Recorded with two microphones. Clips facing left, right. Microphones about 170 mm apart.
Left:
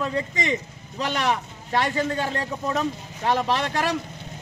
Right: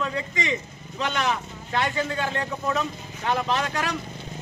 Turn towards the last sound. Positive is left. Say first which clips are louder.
# left 2 dB
turn(degrees=35)  # may be behind; listen again after turning